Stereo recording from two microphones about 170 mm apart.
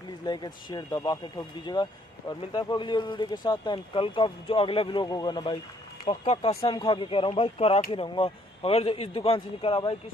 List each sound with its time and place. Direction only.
0.2 s a man's voice: 25° left (ahead or behind)